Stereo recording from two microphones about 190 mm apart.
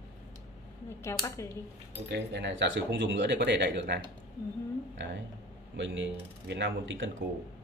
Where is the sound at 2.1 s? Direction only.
70° right (ahead or behind).